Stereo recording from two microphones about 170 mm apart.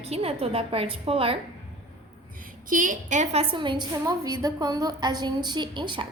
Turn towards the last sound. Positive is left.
turn(degrees=-30)  # may be behind; listen again after turning